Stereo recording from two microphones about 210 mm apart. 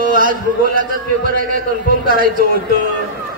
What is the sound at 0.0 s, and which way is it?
Speech, 40° right (ahead or behind).